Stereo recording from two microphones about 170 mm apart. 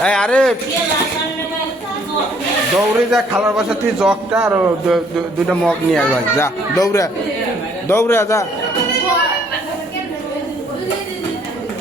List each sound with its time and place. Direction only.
0.0 s speech: 5° left (ahead or behind)
2.7 s speech: 5° right (ahead or behind)
5.5 s speech: centre (ahead or behind)
6.3 s a man's voice: 15° left (ahead or behind)